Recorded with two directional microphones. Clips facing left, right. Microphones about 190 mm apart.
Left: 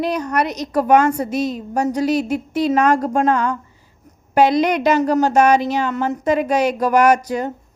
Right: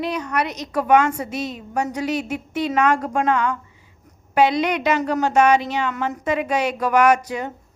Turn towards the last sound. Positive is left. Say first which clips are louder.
# left 2 dB
turn(degrees=40)  # may be behind; listen again after turning